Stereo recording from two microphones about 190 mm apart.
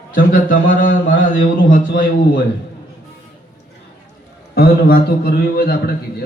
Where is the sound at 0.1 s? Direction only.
45° left (ahead or behind).